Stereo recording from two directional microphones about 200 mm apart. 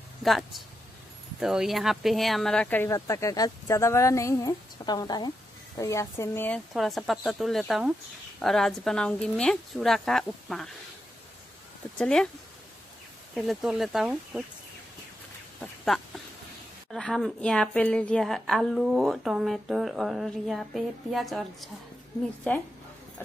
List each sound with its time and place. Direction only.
0.2 s a woman's voice: centre (ahead or behind)
12.0 s a woman's voice: 5° left (ahead or behind)
13.3 s a woman's voice: centre (ahead or behind)
15.6 s a woman's voice: centre (ahead or behind)